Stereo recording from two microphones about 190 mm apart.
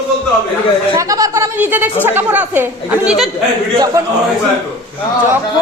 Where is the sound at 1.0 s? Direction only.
20° right (ahead or behind); by 3.3 s 5° right (ahead or behind).